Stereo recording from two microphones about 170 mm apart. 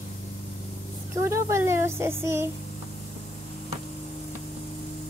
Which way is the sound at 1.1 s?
15° right (ahead or behind).